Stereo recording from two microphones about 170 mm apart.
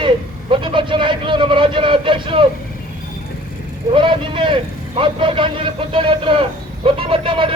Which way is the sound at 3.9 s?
30° right (ahead or behind).